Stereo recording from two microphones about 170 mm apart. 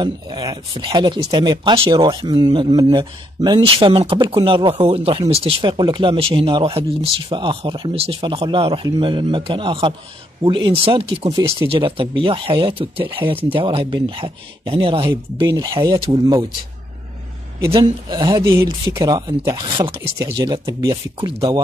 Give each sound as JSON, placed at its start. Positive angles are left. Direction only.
{"t": 0.0, "sound": "speech", "side_deg": -20}
{"t": 17.7, "sound": "speech", "side_deg": -20}
{"t": 20.0, "sound": "speech", "side_deg": -15}
{"t": 20.3, "sound": "speech", "side_deg": -25}